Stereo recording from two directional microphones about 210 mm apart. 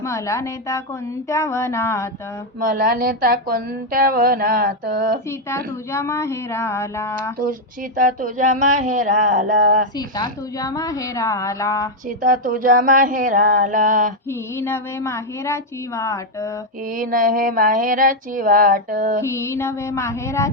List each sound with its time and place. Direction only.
0.0 s a woman's voice: 15° left (ahead or behind)
2.6 s a woman's voice: 40° right (ahead or behind)
5.5 s a woman's voice: 10° left (ahead or behind)
7.9 s a sound: 40° right (ahead or behind)
10.2 s a woman's voice: 15° left (ahead or behind)
12.0 s a sound: 40° right (ahead or behind)
14.5 s a woman's voice: 10° left (ahead or behind)
16.9 s a sound: 40° right (ahead or behind)
19.5 s a woman's voice: 15° left (ahead or behind)